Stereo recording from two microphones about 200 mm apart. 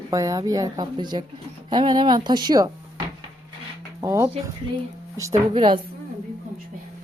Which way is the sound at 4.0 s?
15° right (ahead or behind).